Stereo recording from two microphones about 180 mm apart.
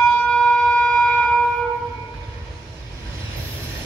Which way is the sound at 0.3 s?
5° left (ahead or behind).